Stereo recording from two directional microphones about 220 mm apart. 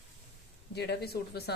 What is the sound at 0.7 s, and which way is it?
Speech, 50° left (ahead or behind).